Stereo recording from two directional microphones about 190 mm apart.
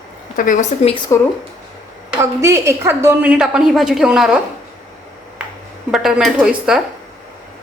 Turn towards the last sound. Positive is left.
turn(degrees=-5)  # may be behind; listen again after turning